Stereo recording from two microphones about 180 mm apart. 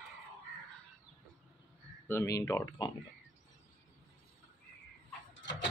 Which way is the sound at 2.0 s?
15° left (ahead or behind).